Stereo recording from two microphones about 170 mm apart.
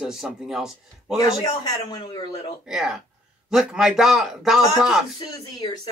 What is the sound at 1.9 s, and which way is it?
Speech, 25° left (ahead or behind).